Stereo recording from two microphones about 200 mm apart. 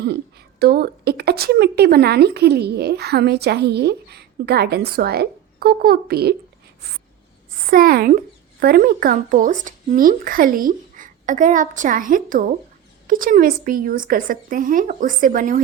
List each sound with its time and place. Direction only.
0.6 s a woman's voice: 50° right (ahead or behind)
7.7 s a woman's voice: 50° right (ahead or behind)